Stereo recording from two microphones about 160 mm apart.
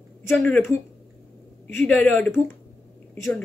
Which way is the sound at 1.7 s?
5° left (ahead or behind).